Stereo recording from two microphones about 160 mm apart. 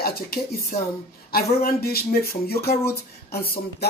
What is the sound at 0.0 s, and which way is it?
Speech, 70° left (ahead or behind).